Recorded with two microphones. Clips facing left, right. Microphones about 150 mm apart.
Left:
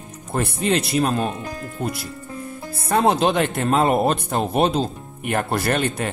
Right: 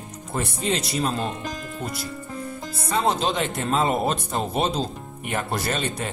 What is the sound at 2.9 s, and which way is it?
Speech, 55° left (ahead or behind).